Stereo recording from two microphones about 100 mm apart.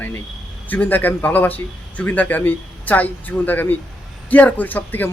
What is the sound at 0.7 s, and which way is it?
A man's voice, 20° left (ahead or behind).